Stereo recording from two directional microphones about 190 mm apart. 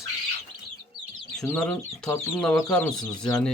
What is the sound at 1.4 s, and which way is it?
Speech, 5° left (ahead or behind).